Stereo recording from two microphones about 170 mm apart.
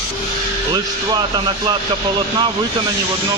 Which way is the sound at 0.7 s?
25° right (ahead or behind).